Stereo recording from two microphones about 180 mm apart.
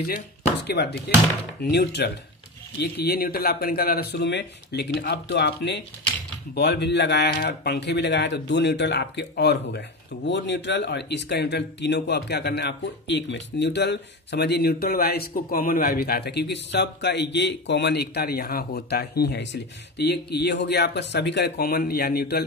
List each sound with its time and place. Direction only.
0.7 s speech: 65° left (ahead or behind)